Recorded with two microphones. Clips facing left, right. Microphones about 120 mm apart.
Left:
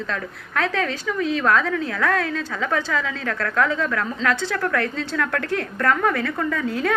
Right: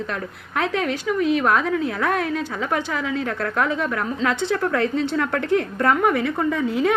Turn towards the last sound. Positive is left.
turn(degrees=-20)  # may be behind; listen again after turning